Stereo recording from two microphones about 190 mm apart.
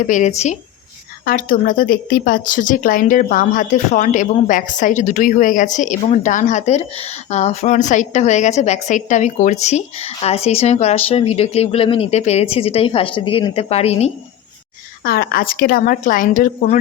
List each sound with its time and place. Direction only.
0.1 s speech: 40° left (ahead or behind)
1.2 s speech: 45° left (ahead or behind)
15.0 s speech: 50° left (ahead or behind)